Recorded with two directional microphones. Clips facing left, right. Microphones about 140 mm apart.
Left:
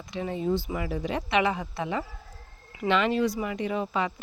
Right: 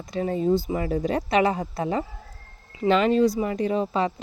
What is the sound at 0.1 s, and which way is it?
Speech, 40° right (ahead or behind).